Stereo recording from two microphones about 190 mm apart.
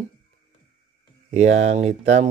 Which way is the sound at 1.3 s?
35° right (ahead or behind).